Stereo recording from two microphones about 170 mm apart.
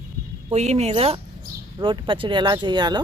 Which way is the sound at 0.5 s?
40° right (ahead or behind).